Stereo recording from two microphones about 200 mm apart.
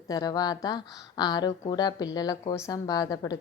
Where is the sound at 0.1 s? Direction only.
20° left (ahead or behind).